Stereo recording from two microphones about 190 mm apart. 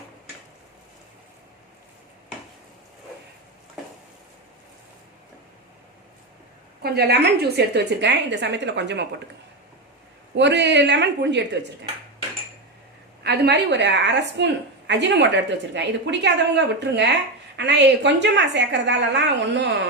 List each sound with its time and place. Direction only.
6.8 s a woman's voice: 60° right (ahead or behind)
10.3 s a woman's voice: 65° right (ahead or behind)
13.2 s a woman's voice: 60° right (ahead or behind)